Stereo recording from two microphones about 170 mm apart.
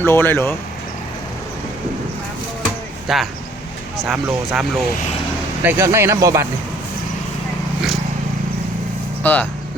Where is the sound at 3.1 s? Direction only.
Centre (ahead or behind).